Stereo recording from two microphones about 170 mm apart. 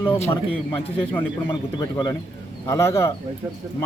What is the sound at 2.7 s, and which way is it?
Speech, 15° left (ahead or behind).